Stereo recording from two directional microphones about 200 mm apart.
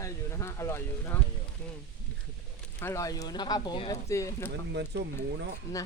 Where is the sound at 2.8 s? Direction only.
15° left (ahead or behind).